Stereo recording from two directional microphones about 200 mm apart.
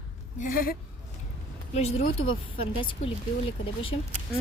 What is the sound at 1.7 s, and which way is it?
A woman's voice, 30° left (ahead or behind).